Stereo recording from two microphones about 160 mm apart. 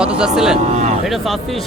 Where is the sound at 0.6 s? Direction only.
45° right (ahead or behind).